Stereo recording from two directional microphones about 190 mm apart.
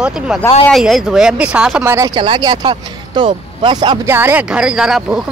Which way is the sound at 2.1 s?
25° right (ahead or behind).